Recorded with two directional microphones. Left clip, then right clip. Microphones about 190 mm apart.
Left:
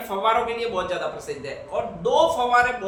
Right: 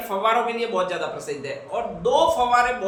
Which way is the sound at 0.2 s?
15° right (ahead or behind).